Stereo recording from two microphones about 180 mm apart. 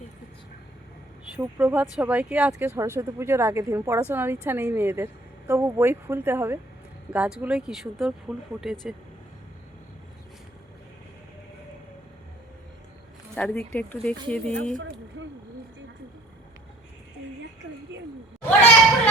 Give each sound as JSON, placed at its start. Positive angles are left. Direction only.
{"t": 1.3, "sound": "speech", "side_deg": -10}
{"t": 13.3, "sound": "speech", "side_deg": 5}
{"t": 14.8, "sound": "a sound", "side_deg": -90}